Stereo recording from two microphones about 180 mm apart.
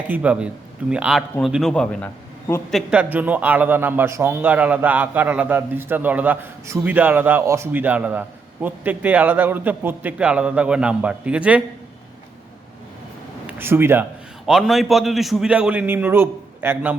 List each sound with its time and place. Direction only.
0.1 s a man's voice: 10° right (ahead or behind)
3.0 s a man's voice: 10° right (ahead or behind)
13.5 s speech: 10° right (ahead or behind)
14.4 s a man's voice: centre (ahead or behind)